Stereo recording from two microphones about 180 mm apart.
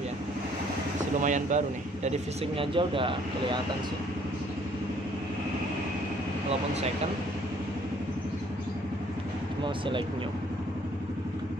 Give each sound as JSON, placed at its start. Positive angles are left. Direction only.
{"t": 1.2, "sound": "speech", "side_deg": -45}
{"t": 2.0, "sound": "speech", "side_deg": -30}